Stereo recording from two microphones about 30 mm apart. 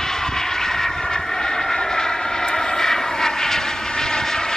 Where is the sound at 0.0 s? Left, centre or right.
Centre.